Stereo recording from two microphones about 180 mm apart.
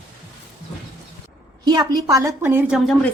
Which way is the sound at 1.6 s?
20° right (ahead or behind).